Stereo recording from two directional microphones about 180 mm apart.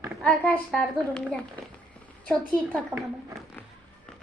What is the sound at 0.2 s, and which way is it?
A woman's voice, 5° left (ahead or behind).